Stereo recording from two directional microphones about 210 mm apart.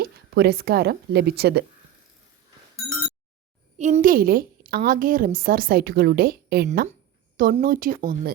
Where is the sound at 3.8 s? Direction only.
35° right (ahead or behind).